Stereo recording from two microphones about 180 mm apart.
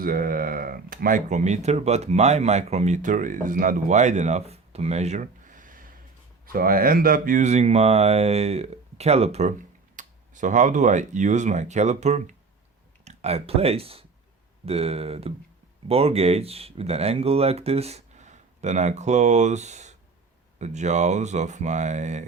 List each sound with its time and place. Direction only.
0.0 s speech: 50° right (ahead or behind)